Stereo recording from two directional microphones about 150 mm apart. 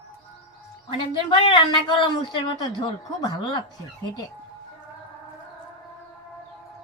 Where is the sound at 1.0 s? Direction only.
30° left (ahead or behind).